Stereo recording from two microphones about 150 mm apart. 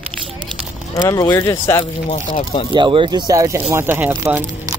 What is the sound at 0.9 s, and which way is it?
Speech, 25° left (ahead or behind).